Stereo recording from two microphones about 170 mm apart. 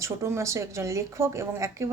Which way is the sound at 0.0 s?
15° right (ahead or behind).